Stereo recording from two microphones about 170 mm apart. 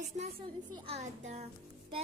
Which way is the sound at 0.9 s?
40° right (ahead or behind).